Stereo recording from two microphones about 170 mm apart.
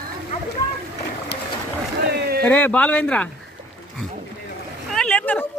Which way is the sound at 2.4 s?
10° left (ahead or behind).